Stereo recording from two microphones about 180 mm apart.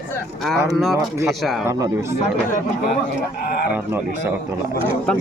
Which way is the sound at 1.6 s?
15° right (ahead or behind).